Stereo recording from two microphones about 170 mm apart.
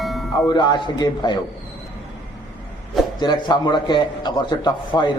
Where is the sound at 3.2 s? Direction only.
25° left (ahead or behind).